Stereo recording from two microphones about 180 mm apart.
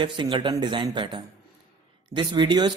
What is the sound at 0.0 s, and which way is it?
Speech, 25° right (ahead or behind).